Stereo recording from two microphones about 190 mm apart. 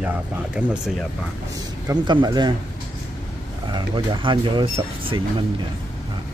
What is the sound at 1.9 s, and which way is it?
Speech, 20° right (ahead or behind).